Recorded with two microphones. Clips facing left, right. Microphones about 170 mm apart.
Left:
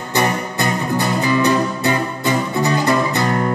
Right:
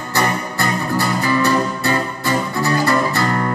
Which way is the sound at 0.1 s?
20° left (ahead or behind).